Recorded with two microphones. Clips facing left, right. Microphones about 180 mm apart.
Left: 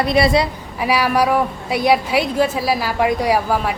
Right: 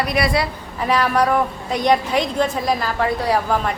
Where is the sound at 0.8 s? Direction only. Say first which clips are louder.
Left 1 dB; 10° left (ahead or behind).